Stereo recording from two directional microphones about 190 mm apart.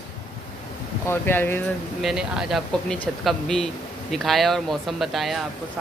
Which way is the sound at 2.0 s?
Centre (ahead or behind).